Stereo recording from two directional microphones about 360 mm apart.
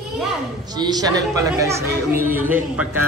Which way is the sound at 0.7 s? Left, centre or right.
Centre.